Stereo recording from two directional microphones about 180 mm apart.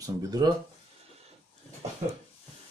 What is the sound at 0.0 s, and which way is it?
Speech, 20° right (ahead or behind).